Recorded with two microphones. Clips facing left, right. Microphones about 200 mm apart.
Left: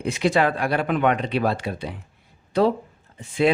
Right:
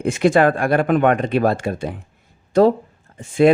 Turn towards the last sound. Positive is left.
turn(degrees=-50)  # may be behind; listen again after turning